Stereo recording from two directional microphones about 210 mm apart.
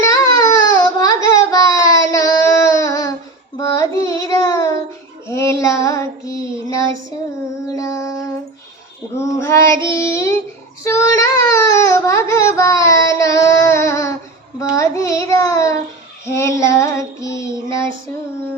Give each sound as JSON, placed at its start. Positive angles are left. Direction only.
{"t": 0.0, "sound": "baby cry", "side_deg": 15}
{"t": 3.6, "sound": "child singing", "side_deg": 15}
{"t": 9.4, "sound": "child singing", "side_deg": 15}